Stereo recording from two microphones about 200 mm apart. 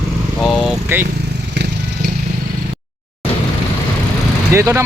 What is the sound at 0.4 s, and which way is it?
Vehicle, centre (ahead or behind).